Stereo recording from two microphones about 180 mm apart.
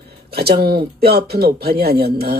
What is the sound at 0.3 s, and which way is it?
Speech, 60° right (ahead or behind).